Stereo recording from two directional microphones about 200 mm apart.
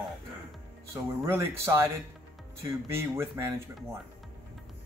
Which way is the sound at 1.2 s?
10° right (ahead or behind).